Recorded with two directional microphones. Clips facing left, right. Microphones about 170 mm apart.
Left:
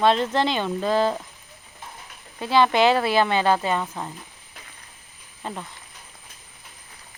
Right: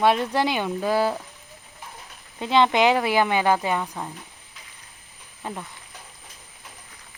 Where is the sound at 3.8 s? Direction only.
5° right (ahead or behind).